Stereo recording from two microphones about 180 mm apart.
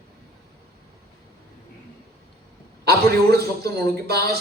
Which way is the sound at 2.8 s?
60° right (ahead or behind).